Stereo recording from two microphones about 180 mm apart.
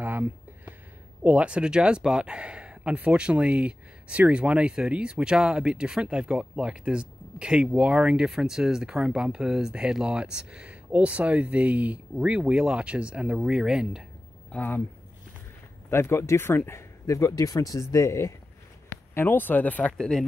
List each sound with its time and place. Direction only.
0.0 s a sound: 10° right (ahead or behind)
1.2 s speech: 5° right (ahead or behind)
14.5 s speech: 10° left (ahead or behind)
15.9 s speech: 15° left (ahead or behind)